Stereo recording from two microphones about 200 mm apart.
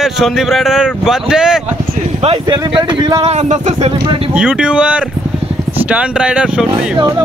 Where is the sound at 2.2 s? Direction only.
25° right (ahead or behind).